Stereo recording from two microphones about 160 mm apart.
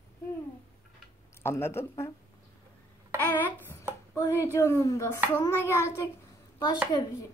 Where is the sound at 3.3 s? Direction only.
15° left (ahead or behind).